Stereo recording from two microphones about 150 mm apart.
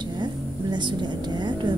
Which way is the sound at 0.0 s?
30° right (ahead or behind).